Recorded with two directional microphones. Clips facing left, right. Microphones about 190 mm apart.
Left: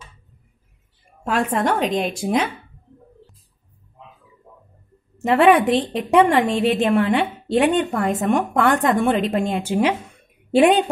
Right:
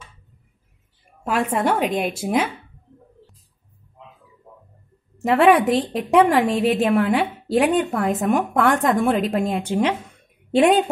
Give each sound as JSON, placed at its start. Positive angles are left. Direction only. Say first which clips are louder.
{"t": 1.2, "sound": "a woman's voice", "louder": "even", "side_deg": -5}
{"t": 5.2, "sound": "a woman's voice", "louder": "left 1 dB", "side_deg": 0}